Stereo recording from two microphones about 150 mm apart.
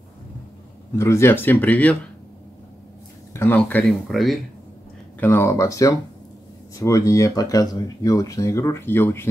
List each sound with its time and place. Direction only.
0.9 s speech: 20° left (ahead or behind)
3.3 s speech: 15° left (ahead or behind)
5.2 s speech: 15° left (ahead or behind)